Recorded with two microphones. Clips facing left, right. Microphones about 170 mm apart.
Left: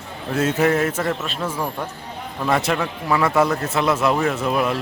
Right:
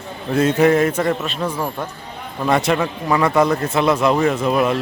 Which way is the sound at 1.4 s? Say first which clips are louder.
Right 2 dB; 10° right (ahead or behind).